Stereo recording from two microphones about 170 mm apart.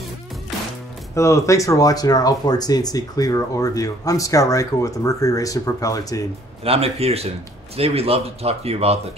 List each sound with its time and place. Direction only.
1.1 s speech: 15° left (ahead or behind)
6.6 s speech: 35° right (ahead or behind)